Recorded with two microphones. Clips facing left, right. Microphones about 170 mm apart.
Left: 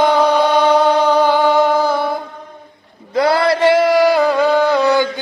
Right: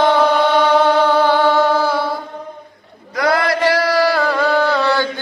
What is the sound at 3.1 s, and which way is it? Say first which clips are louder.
Chant: left 3 dB; 30° left (ahead or behind).